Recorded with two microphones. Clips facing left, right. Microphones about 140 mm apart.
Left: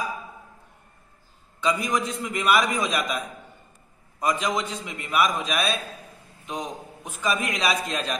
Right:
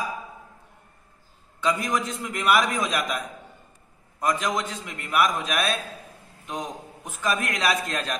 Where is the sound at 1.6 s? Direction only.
5° left (ahead or behind).